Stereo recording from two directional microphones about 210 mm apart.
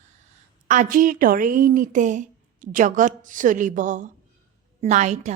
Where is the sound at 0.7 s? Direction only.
40° right (ahead or behind).